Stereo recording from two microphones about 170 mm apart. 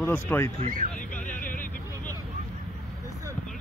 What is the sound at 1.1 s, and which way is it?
Vehicle, 50° left (ahead or behind).